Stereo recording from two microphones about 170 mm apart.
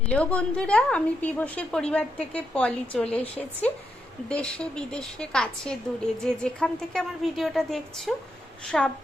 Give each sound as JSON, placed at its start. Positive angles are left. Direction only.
{"t": 0.1, "sound": "a woman's voice", "side_deg": 5}